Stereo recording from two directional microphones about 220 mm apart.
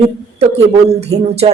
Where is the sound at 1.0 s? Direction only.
30° right (ahead or behind).